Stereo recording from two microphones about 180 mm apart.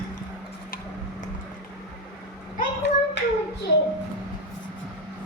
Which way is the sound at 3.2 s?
70° left (ahead or behind).